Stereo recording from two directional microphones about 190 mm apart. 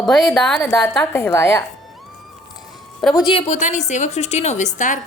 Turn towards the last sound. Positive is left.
turn(degrees=40)  # may be behind; listen again after turning